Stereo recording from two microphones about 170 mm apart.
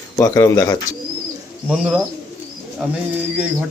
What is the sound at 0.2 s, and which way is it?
Speech, 15° left (ahead or behind).